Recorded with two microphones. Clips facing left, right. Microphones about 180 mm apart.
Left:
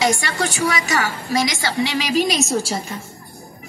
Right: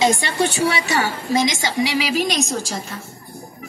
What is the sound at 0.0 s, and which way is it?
A woman's voice, 25° right (ahead or behind).